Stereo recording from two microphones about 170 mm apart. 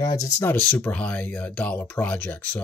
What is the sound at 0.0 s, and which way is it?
Speech, 20° left (ahead or behind).